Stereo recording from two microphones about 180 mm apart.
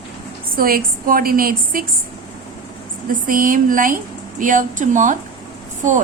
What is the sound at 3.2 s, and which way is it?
A woman's voice, 50° right (ahead or behind).